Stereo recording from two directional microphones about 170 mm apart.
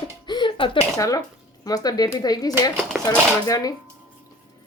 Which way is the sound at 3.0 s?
15° right (ahead or behind).